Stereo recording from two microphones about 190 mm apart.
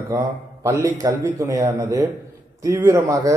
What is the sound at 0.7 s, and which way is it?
A man's voice, 15° right (ahead or behind).